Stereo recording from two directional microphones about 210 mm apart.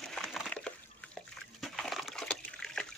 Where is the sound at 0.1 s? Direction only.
Centre (ahead or behind).